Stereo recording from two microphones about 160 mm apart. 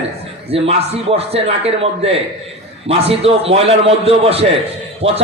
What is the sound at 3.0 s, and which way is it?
A man's voice, 40° right (ahead or behind).